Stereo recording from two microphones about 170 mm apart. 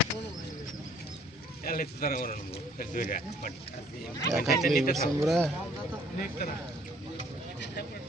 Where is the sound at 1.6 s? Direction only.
60° left (ahead or behind).